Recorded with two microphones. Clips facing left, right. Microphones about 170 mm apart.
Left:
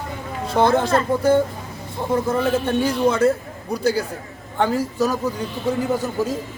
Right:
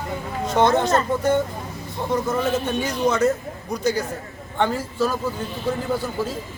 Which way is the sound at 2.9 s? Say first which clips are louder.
Left 1 dB; 10° left (ahead or behind).